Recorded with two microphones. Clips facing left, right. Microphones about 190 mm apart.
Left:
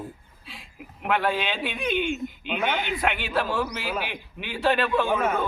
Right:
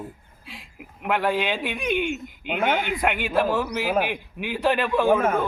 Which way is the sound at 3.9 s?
55° right (ahead or behind).